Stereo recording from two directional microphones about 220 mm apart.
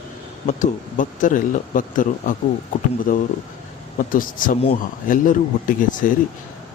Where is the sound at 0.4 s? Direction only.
35° left (ahead or behind).